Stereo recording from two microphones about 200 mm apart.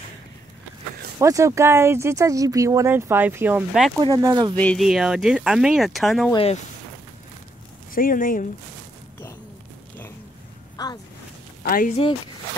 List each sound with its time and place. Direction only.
1.2 s speech: 15° right (ahead or behind)
4.0 s speech: 20° right (ahead or behind)
4.6 s speech: 5° left (ahead or behind)
6.3 s speech: 30° left (ahead or behind)
7.9 s speech: 45° left (ahead or behind)
11.6 s speech: 45° left (ahead or behind)